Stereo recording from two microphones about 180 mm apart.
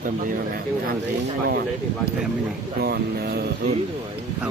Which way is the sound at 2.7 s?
60° right (ahead or behind).